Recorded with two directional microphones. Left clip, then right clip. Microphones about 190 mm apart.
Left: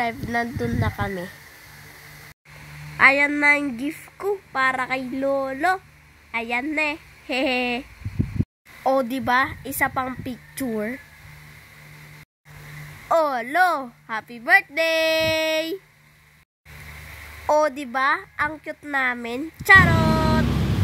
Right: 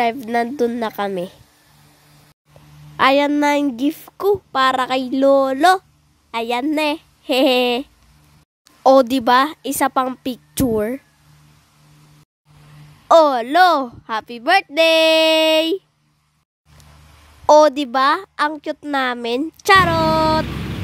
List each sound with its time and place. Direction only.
0.0 s a child's voice: 45° right (ahead or behind)
3.0 s a child's voice: 45° right (ahead or behind)
8.8 s a child's voice: 50° right (ahead or behind)
13.1 s a child's voice: 45° right (ahead or behind)
17.5 s a child's voice: 45° right (ahead or behind)
19.2 s a sound: 45° right (ahead or behind)